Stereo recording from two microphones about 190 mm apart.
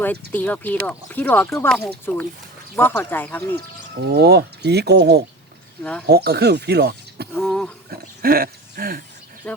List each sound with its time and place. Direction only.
0.3 s speech: 10° left (ahead or behind)
4.0 s speech: 60° right (ahead or behind)
7.3 s a sound: 5° left (ahead or behind)
7.9 s dog: 50° right (ahead or behind)
9.5 s speech: 10° left (ahead or behind)